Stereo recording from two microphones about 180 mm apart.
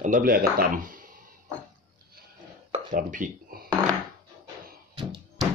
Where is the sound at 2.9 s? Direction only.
50° right (ahead or behind).